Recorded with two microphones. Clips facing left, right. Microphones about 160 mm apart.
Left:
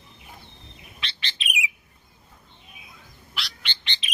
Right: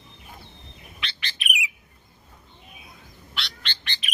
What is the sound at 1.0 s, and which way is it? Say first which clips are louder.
Bird: right 1 dB; 30° left (ahead or behind).